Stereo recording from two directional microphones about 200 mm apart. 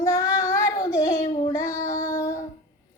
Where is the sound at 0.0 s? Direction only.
15° left (ahead or behind).